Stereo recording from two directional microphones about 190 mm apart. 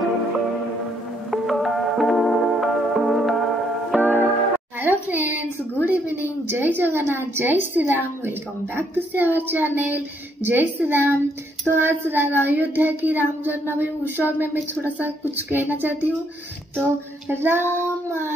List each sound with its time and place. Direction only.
1.3 s music: centre (ahead or behind)
4.7 s a woman's voice: 10° right (ahead or behind)